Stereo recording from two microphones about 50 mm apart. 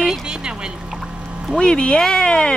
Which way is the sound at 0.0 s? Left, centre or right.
Centre.